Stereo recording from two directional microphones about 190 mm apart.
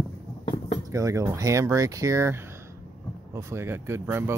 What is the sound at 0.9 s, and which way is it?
Speech, 15° right (ahead or behind).